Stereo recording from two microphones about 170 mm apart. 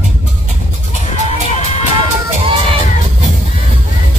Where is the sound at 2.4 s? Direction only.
30° right (ahead or behind).